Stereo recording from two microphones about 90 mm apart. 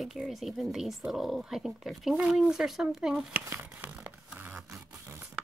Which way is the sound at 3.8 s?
20° right (ahead or behind).